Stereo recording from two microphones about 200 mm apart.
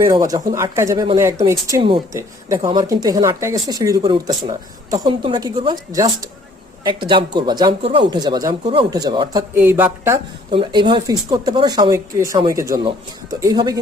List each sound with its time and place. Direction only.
0.3 s speech: 15° right (ahead or behind)
9.6 s speech: 10° right (ahead or behind)
10.5 s speech: 25° right (ahead or behind)